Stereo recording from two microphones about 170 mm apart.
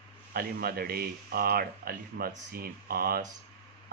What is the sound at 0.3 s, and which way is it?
Speech, 60° right (ahead or behind).